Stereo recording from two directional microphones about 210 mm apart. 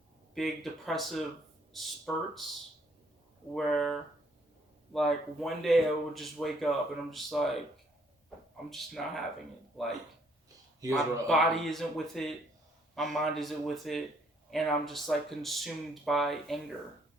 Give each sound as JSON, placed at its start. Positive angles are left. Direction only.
{"t": 0.3, "sound": "speech", "side_deg": 0}
{"t": 3.5, "sound": "speech", "side_deg": 0}
{"t": 4.9, "sound": "speech", "side_deg": 0}
{"t": 8.7, "sound": "speech", "side_deg": 0}
{"t": 10.8, "sound": "speech", "side_deg": -15}
{"t": 11.3, "sound": "speech", "side_deg": 0}